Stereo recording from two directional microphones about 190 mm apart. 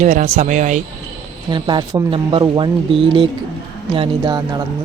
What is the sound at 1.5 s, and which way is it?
Speech, 25° right (ahead or behind).